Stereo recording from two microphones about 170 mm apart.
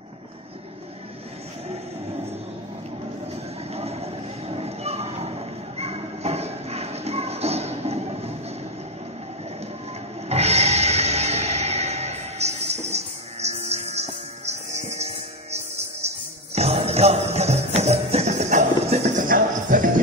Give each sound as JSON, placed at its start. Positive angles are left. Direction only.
{"t": 3.7, "sound": "horse", "side_deg": -35}
{"t": 5.8, "sound": "a sound", "side_deg": -35}
{"t": 10.2, "sound": "music", "side_deg": -40}